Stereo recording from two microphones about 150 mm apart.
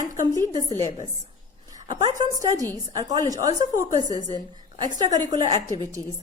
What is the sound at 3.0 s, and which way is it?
A woman's voice, 25° right (ahead or behind).